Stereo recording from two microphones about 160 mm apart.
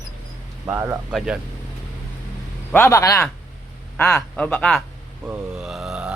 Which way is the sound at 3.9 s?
5° left (ahead or behind).